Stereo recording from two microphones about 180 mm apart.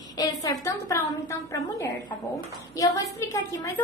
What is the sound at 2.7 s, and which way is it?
Speech, 20° left (ahead or behind).